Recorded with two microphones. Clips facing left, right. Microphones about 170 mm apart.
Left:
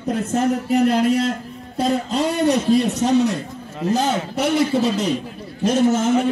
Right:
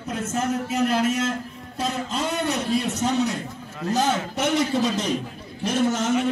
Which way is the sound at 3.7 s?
15° left (ahead or behind).